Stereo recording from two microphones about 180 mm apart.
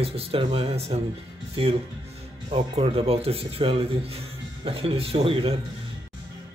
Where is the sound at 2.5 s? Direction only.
30° right (ahead or behind).